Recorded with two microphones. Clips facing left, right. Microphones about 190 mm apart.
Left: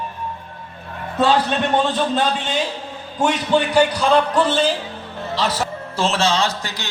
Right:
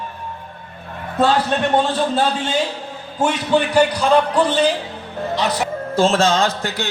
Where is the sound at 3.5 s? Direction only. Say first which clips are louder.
Right 1 dB; 10° right (ahead or behind).